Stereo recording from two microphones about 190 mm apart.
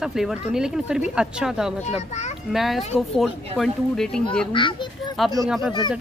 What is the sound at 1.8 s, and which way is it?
Speech, 35° left (ahead or behind).